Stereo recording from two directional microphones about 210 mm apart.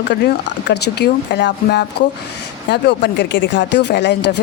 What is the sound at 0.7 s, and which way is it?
Speech, 50° left (ahead or behind).